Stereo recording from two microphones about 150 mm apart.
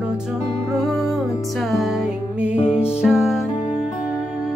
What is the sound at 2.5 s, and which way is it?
Music, 40° left (ahead or behind).